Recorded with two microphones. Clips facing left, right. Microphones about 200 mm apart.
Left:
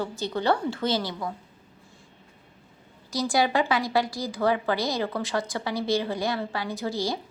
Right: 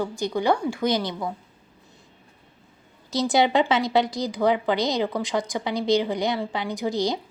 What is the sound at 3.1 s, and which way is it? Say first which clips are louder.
A woman's voice: right 4 dB; 20° right (ahead or behind).